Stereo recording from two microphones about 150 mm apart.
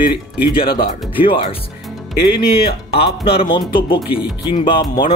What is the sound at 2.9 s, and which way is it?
Speech, 40° left (ahead or behind).